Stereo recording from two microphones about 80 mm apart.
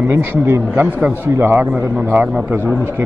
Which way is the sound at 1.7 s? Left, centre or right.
Centre.